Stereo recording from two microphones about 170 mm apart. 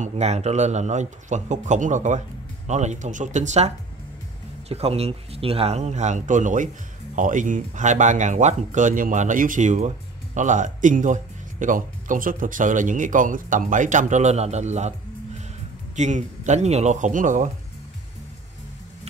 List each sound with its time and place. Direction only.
0.0 s speech: 40° right (ahead or behind)